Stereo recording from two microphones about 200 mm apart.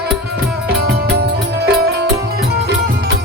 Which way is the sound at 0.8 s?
55° right (ahead or behind).